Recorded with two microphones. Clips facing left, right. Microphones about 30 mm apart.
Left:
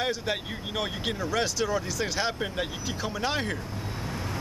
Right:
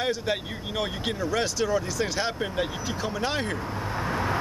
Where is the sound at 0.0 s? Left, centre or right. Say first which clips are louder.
Right 2 dB; centre.